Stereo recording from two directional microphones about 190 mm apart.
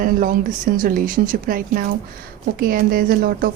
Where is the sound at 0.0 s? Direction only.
45° right (ahead or behind).